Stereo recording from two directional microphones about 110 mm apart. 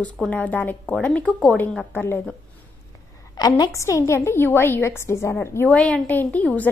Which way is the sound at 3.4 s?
40° left (ahead or behind).